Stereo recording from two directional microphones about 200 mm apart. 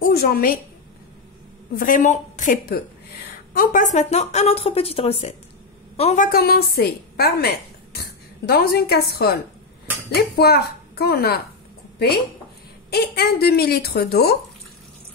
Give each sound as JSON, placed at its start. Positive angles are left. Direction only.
{"t": 0.0, "sound": "a woman's voice", "side_deg": 50}
{"t": 1.8, "sound": "a woman's voice", "side_deg": 40}
{"t": 6.2, "sound": "a woman's voice", "side_deg": 50}
{"t": 12.9, "sound": "a woman's voice", "side_deg": 55}